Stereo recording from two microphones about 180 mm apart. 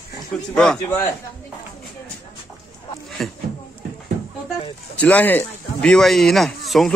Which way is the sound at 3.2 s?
Centre (ahead or behind).